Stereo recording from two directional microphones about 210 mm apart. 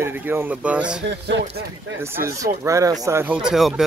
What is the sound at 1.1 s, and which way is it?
Speech, 55° right (ahead or behind).